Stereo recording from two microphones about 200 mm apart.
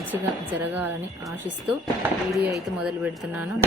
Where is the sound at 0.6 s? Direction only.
10° right (ahead or behind).